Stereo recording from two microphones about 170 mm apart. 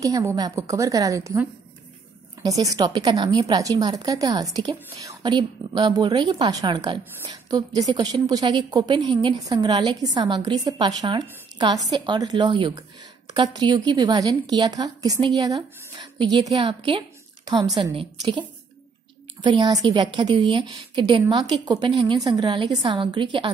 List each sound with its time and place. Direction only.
0.0 s a woman's voice: 20° right (ahead or behind)
19.4 s a woman's voice: 25° right (ahead or behind)